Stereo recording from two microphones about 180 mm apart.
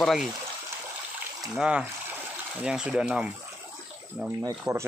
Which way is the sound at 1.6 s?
5° right (ahead or behind).